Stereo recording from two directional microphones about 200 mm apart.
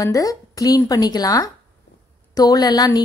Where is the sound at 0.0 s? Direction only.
15° left (ahead or behind).